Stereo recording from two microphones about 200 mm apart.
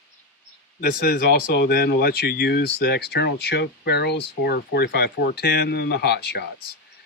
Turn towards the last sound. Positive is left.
turn(degrees=55)  # may be behind; listen again after turning